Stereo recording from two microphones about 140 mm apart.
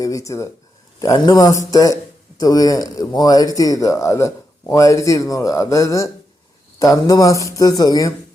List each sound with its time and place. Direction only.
0.0 s speech: 25° left (ahead or behind)